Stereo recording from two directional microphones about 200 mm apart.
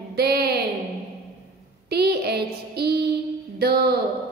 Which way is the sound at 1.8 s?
55° right (ahead or behind).